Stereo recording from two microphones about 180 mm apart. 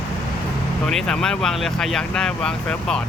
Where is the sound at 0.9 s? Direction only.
5° left (ahead or behind).